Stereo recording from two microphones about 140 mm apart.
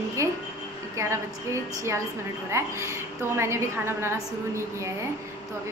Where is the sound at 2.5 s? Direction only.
20° right (ahead or behind).